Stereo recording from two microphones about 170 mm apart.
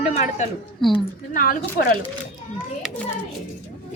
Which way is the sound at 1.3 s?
55° left (ahead or behind).